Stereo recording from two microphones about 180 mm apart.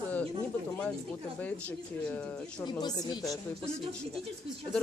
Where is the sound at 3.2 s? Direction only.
Centre (ahead or behind).